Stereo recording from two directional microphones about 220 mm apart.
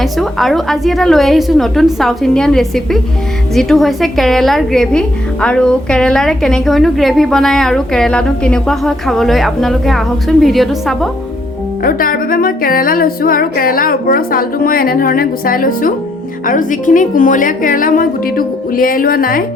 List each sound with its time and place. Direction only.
0.0 s a woman's voice: centre (ahead or behind)
11.8 s music: 40° left (ahead or behind)